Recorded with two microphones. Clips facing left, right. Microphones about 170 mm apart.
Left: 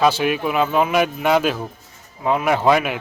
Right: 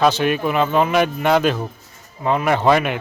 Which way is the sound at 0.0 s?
5° left (ahead or behind).